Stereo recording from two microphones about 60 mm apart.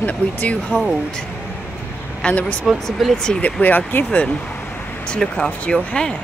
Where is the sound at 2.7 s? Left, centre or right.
Centre.